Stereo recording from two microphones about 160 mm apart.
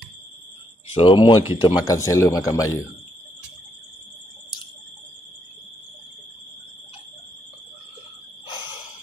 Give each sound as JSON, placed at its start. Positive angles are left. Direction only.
{"t": 0.9, "sound": "a man's voice", "side_deg": 30}
{"t": 1.4, "sound": "speech", "side_deg": -15}
{"t": 1.9, "sound": "a man's voice", "side_deg": 20}